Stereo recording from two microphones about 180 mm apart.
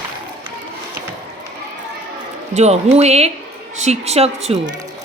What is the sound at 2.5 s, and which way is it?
Speech, 35° right (ahead or behind).